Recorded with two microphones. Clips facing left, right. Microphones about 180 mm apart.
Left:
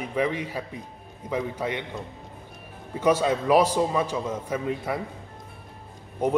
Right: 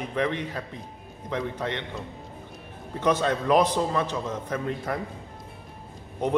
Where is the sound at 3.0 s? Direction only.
10° left (ahead or behind).